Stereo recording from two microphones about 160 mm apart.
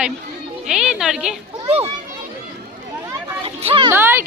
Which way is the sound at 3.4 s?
35° right (ahead or behind).